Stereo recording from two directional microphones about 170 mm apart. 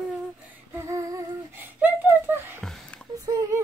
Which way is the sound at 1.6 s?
10° right (ahead or behind).